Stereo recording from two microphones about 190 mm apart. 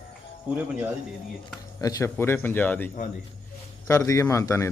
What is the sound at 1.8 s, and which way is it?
A man's voice, 20° left (ahead or behind).